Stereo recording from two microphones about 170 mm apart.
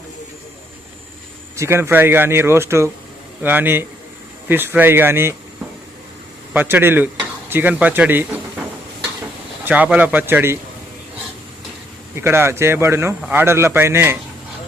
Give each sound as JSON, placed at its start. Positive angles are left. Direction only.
{"t": 1.5, "sound": "speech", "side_deg": -15}
{"t": 6.5, "sound": "speech", "side_deg": -10}
{"t": 9.6, "sound": "speech", "side_deg": -10}
{"t": 12.1, "sound": "speech", "side_deg": -15}